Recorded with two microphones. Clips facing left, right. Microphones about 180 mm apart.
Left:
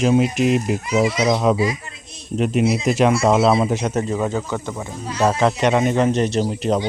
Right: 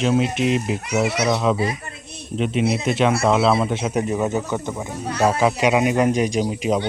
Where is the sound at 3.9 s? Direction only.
15° right (ahead or behind).